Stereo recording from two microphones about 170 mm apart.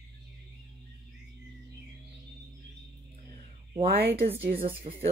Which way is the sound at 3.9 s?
70° right (ahead or behind).